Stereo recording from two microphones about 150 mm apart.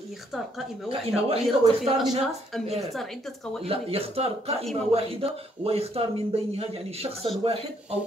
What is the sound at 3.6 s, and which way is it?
Speech, 40° right (ahead or behind).